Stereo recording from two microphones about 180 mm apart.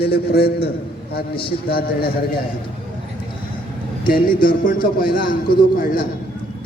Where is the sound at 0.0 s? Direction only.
60° left (ahead or behind).